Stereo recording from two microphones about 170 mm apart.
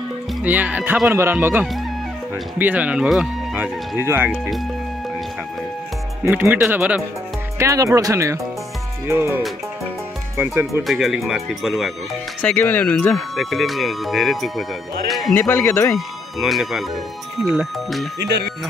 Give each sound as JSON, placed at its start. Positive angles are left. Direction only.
{"t": 0.4, "sound": "speech", "side_deg": -10}
{"t": 6.2, "sound": "speech", "side_deg": -10}
{"t": 10.8, "sound": "speech", "side_deg": 0}
{"t": 12.4, "sound": "speech", "side_deg": 10}
{"t": 15.3, "sound": "speech", "side_deg": 10}
{"t": 16.3, "sound": "speech", "side_deg": 0}
{"t": 18.2, "sound": "speech", "side_deg": -80}